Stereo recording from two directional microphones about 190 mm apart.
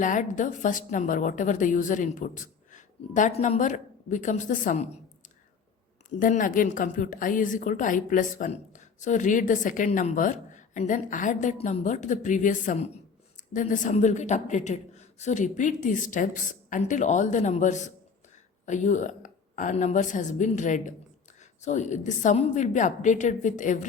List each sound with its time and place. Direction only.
0.0 s a woman's voice: 40° left (ahead or behind)
6.1 s a woman's voice: 45° left (ahead or behind)